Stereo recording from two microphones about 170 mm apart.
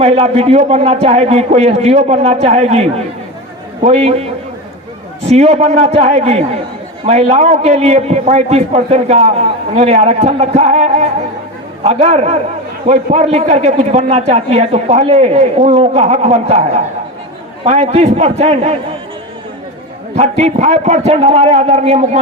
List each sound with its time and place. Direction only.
0.0 s a man's voice: 35° right (ahead or behind)
3.9 s a man's voice: 40° right (ahead or behind)
20.1 s a man's voice: 40° right (ahead or behind)